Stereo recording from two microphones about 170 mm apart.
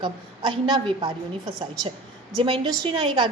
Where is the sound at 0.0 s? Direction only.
30° right (ahead or behind).